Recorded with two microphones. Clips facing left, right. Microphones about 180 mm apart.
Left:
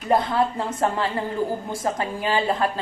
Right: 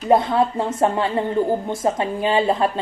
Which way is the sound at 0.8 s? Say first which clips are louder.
Right 4 dB; 25° right (ahead or behind).